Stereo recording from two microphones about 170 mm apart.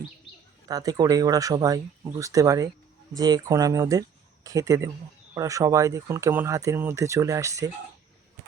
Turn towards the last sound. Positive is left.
turn(degrees=-20)  # may be behind; listen again after turning